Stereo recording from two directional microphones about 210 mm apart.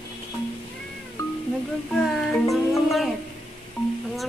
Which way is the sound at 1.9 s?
Centre (ahead or behind).